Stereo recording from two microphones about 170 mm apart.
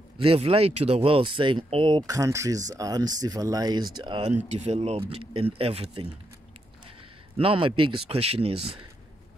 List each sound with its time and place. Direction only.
0.2 s speech: 35° right (ahead or behind)
4.5 s speech: 40° right (ahead or behind)
7.3 s speech: 30° right (ahead or behind)